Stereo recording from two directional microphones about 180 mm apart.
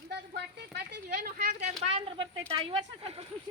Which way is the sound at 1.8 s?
35° right (ahead or behind).